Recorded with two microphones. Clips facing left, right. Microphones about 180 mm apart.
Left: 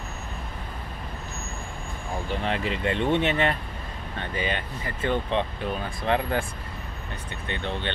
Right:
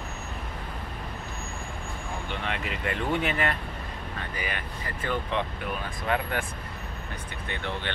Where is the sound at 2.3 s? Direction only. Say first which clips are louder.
Left 6 dB; 35° left (ahead or behind).